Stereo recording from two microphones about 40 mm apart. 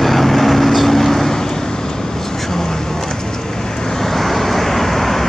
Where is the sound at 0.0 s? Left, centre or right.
Centre.